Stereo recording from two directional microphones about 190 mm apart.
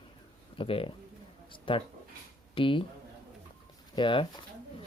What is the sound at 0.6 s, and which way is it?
Speech, 30° left (ahead or behind).